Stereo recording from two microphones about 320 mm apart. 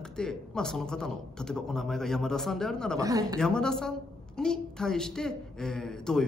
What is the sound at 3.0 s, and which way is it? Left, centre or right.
Speech, centre.